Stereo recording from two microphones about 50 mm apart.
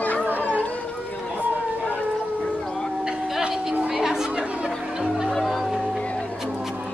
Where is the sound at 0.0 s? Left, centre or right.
Left.